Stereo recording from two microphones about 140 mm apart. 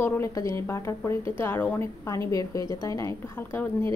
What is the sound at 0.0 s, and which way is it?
A woman's voice, 20° left (ahead or behind).